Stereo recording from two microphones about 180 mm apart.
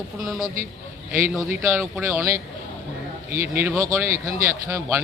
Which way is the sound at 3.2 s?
10° right (ahead or behind).